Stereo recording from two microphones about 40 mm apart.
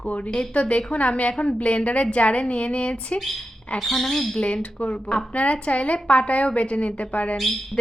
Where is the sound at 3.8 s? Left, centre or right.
Centre.